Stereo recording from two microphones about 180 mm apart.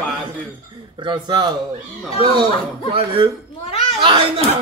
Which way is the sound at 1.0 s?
25° right (ahead or behind).